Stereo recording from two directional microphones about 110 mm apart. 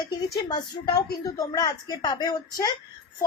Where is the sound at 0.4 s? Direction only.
40° left (ahead or behind).